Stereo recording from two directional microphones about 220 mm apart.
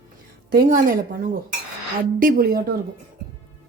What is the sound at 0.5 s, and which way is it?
Speech, 40° right (ahead or behind).